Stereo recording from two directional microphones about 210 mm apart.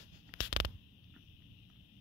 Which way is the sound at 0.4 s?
50° left (ahead or behind).